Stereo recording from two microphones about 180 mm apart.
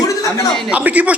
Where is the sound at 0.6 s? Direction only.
5° right (ahead or behind).